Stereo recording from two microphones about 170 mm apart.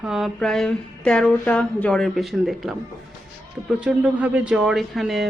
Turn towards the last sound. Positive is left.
turn(degrees=0)  # may be behind; listen again after turning